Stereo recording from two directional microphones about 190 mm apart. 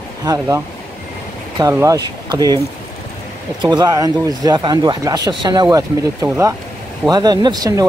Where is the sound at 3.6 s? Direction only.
20° right (ahead or behind).